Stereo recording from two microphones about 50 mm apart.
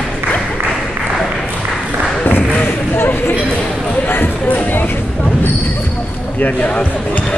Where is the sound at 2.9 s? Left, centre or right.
Left.